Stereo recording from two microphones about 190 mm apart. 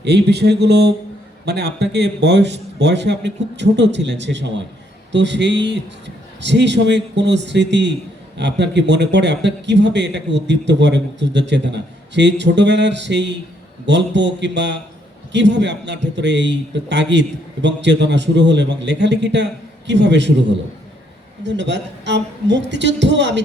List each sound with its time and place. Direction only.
0.0 s a man's voice: 60° right (ahead or behind)
21.4 s a man's voice: 70° right (ahead or behind)